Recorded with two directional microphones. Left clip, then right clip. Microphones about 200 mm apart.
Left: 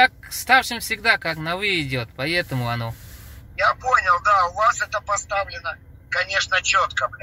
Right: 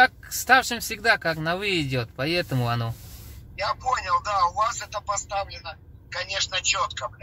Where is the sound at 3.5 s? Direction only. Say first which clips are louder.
Left 7 dB; 5° left (ahead or behind).